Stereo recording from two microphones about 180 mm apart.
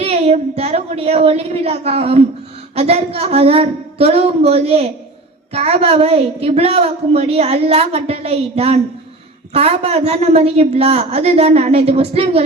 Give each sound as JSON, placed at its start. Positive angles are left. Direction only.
{"t": 0.0, "sound": "a woman's voice", "side_deg": -35}